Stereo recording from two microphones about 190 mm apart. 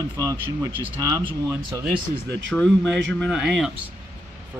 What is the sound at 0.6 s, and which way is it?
Speech, 25° right (ahead or behind).